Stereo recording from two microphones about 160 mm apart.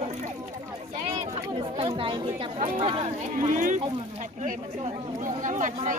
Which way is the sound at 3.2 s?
55° right (ahead or behind).